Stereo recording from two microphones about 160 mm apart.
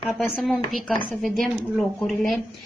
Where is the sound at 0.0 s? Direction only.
Centre (ahead or behind).